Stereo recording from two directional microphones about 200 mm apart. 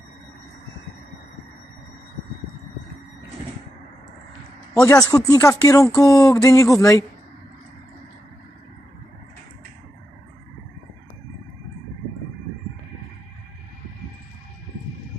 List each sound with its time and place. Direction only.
4.7 s speech: 15° left (ahead or behind)